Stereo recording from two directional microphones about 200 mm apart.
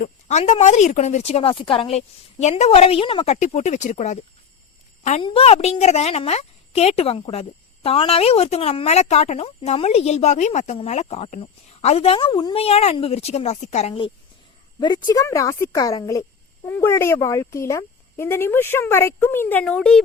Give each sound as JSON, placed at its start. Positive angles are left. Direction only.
{"t": 0.0, "sound": "speech", "side_deg": 35}
{"t": 5.2, "sound": "speech", "side_deg": 30}